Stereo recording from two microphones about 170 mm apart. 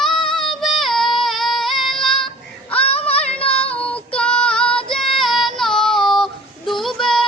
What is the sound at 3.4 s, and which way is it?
Child singing, 5° left (ahead or behind).